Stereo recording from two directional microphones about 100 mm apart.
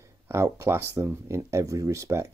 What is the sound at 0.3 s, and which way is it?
Speech, 25° right (ahead or behind).